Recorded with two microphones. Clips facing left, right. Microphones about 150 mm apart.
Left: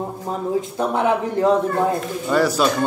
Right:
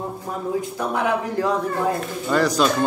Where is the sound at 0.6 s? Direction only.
25° left (ahead or behind).